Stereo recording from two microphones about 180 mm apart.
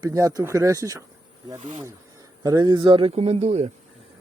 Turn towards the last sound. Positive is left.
turn(degrees=-35)  # may be behind; listen again after turning